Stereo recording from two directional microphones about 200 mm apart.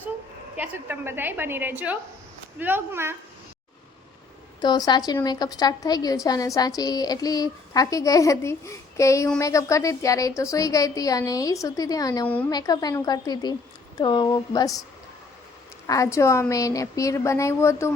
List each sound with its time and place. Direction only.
0.5 s a woman's voice: 5° right (ahead or behind)
4.6 s a woman's voice: 20° left (ahead or behind)
15.9 s speech: 15° left (ahead or behind)